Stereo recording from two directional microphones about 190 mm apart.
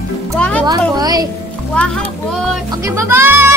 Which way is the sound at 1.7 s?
5° left (ahead or behind).